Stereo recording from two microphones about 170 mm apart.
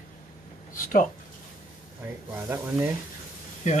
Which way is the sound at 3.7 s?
45° left (ahead or behind).